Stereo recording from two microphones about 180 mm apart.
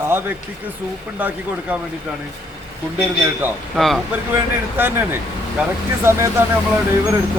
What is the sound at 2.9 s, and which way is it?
A man's voice, 5° right (ahead or behind).